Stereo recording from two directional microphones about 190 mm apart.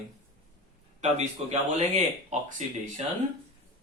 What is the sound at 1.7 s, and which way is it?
Speech, 40° right (ahead or behind).